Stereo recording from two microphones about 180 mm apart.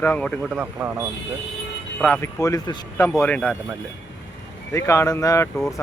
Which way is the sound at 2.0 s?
Centre (ahead or behind).